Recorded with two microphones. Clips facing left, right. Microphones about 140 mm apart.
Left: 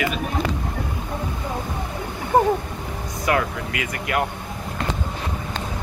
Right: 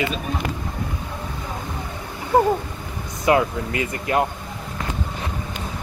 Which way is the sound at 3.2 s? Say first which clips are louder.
Right 4 dB; 25° right (ahead or behind).